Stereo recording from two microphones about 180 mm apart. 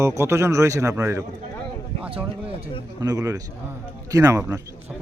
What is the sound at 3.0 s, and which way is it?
A man's voice, 20° right (ahead or behind).